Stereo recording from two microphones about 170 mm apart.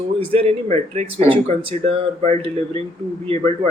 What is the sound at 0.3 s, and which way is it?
Speech, 35° right (ahead or behind).